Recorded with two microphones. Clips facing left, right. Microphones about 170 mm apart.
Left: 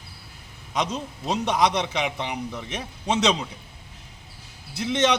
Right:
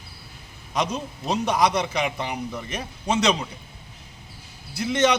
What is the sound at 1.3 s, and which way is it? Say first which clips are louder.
A man's voice: right 1 dB; centre (ahead or behind).